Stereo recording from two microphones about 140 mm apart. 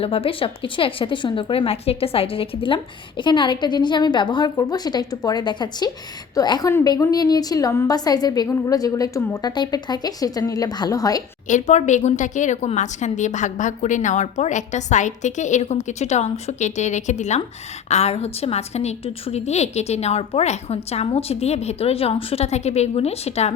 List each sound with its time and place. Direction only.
0.0 s a woman's voice: 40° left (ahead or behind); by 11.2 s 25° left (ahead or behind)
11.4 s a woman's voice: 60° left (ahead or behind)